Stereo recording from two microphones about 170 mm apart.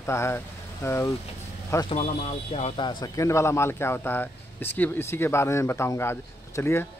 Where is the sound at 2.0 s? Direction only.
40° left (ahead or behind).